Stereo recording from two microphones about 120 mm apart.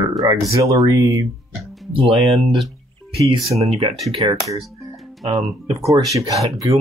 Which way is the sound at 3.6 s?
50° right (ahead or behind).